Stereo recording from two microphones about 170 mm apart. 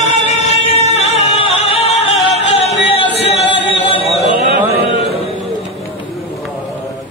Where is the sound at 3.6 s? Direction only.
35° left (ahead or behind).